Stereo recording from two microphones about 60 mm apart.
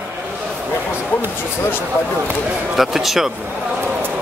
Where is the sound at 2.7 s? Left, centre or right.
Centre.